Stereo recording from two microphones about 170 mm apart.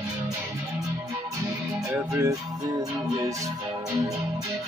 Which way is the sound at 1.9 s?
15° right (ahead or behind).